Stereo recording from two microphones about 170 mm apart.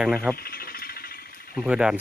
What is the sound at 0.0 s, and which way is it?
Speech, 5° left (ahead or behind).